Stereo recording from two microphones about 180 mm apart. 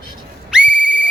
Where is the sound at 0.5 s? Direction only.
5° right (ahead or behind).